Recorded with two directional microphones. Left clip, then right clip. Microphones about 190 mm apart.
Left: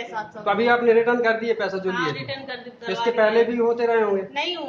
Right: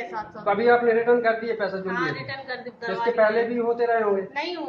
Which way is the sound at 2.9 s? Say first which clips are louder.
Left 1 dB; 45° left (ahead or behind).